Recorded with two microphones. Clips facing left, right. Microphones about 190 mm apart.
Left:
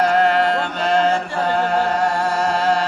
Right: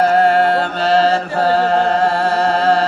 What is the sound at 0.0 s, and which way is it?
Music, 40° right (ahead or behind).